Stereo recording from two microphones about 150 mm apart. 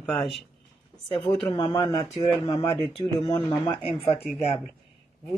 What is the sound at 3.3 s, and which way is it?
Speech, 25° left (ahead or behind).